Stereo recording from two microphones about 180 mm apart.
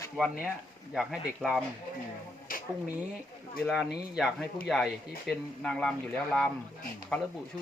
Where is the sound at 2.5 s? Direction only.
50° left (ahead or behind).